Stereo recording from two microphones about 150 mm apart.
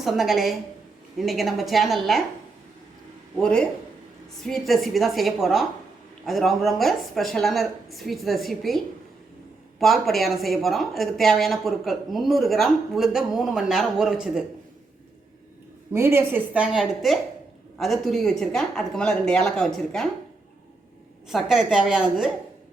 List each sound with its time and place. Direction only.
0.0 s speech: centre (ahead or behind)
3.4 s a man's voice: 5° left (ahead or behind)
9.8 s speech: centre (ahead or behind)
15.9 s a woman's voice: 15° right (ahead or behind)
16.7 s speech: centre (ahead or behind)
21.2 s speech: 5° right (ahead or behind)